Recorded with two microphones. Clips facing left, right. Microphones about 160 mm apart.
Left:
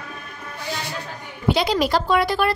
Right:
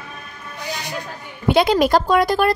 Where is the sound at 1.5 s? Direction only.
55° right (ahead or behind).